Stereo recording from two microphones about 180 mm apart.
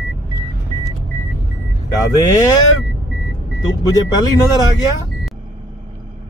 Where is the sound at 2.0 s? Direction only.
20° left (ahead or behind).